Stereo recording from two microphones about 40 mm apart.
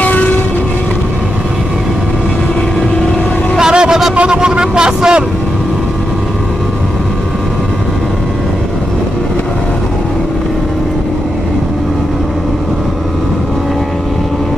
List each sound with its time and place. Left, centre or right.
0.0 s train: left
3.5 s vehicle: centre
4.1 s a sound: right